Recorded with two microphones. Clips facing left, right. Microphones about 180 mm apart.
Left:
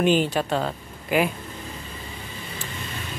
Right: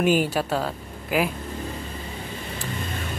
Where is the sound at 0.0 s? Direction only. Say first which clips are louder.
Even; 10° right (ahead or behind).